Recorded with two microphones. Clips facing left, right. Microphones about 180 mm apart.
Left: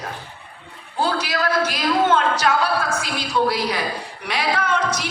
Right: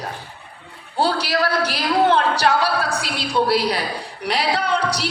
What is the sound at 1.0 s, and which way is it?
A woman's voice, 35° right (ahead or behind).